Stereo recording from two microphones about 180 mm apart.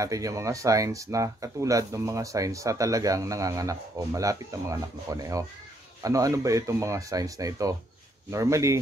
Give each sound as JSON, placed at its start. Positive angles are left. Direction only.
{"t": 0.0, "sound": "speech", "side_deg": -20}